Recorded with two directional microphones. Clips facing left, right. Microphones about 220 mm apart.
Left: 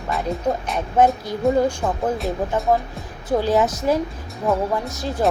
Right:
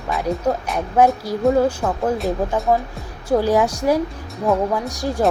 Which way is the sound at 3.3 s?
10° right (ahead or behind).